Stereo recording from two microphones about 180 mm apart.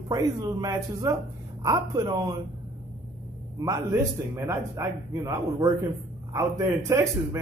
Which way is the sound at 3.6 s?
15° right (ahead or behind).